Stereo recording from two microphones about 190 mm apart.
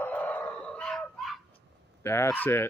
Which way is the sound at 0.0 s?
10° left (ahead or behind).